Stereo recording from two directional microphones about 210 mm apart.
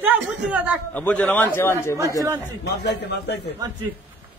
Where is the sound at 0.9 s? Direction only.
5° left (ahead or behind).